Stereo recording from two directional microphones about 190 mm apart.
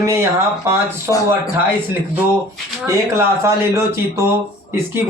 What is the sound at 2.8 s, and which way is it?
Speech, 15° right (ahead or behind).